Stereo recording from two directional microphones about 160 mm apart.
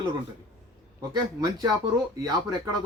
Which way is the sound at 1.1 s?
25° right (ahead or behind).